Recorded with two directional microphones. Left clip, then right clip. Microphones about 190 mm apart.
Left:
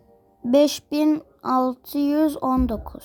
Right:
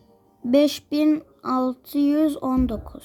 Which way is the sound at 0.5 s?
35° left (ahead or behind).